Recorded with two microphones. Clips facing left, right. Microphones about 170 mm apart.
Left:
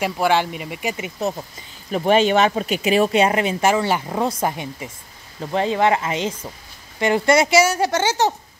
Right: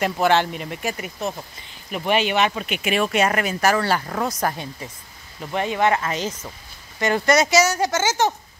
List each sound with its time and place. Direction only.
0.0 s speech: 10° left (ahead or behind)
0.8 s speech: 20° left (ahead or behind)
1.9 s speech: 35° left (ahead or behind); by 4.9 s 15° left (ahead or behind)
5.4 s speech: 25° left (ahead or behind)